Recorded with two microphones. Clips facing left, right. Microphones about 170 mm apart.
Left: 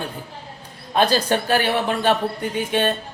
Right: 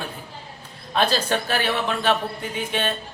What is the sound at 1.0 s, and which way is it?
Speech, 10° left (ahead or behind).